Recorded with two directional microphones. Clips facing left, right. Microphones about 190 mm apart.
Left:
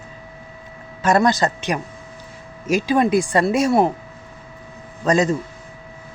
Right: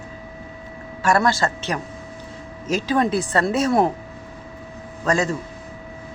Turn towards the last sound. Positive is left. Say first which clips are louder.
# left 4 dB
turn(degrees=20)  # may be behind; listen again after turning